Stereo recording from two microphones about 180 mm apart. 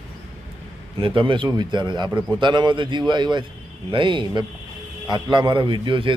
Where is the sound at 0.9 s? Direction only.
30° right (ahead or behind).